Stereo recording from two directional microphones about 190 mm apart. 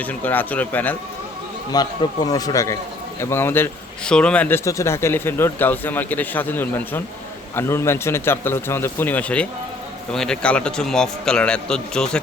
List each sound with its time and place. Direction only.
0.0 s speech: 10° left (ahead or behind)
1.7 s a man's voice: 20° left (ahead or behind); by 12.2 s 5° left (ahead or behind)